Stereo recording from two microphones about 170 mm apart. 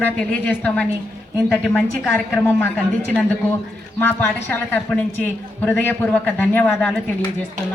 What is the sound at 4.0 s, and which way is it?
Speech, 10° left (ahead or behind).